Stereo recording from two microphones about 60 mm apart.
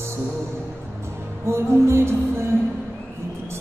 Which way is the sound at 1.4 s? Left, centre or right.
Right.